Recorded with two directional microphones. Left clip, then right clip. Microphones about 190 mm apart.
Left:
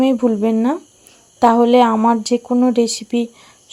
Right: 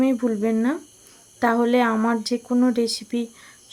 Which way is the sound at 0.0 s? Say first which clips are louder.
Left 6 dB; 15° left (ahead or behind).